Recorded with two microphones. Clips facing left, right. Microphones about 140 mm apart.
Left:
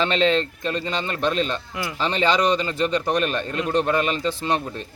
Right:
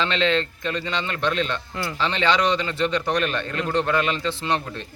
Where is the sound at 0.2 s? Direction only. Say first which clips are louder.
Left 2 dB; 40° left (ahead or behind).